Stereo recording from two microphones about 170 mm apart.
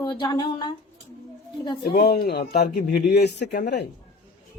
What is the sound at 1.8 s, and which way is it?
Speech, 70° left (ahead or behind).